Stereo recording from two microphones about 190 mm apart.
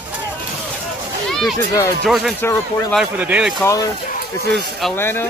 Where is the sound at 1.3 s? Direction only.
Centre (ahead or behind).